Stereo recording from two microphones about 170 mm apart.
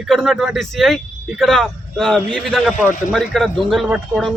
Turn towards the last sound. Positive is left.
turn(degrees=0)  # may be behind; listen again after turning